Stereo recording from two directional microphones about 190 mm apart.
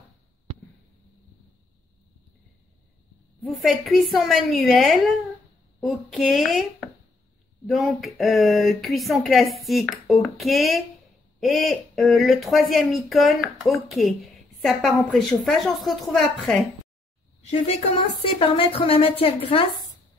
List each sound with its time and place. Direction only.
3.4 s speech: centre (ahead or behind)
7.6 s speech: centre (ahead or behind)
17.4 s a woman's voice: 35° left (ahead or behind)